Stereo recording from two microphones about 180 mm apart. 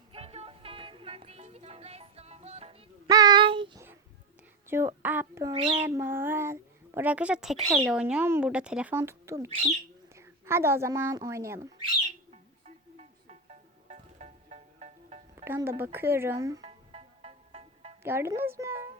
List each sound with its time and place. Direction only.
0.1 s music: 35° right (ahead or behind)
3.1 s child singing: 20° right (ahead or behind)
4.7 s a woman's voice: 15° right (ahead or behind)
5.8 s a woman's voice: 15° right (ahead or behind)
12.3 s music: 40° right (ahead or behind)
15.4 s speech: 10° right (ahead or behind)
16.6 s music: 35° right (ahead or behind)
18.0 s speech: 15° right (ahead or behind)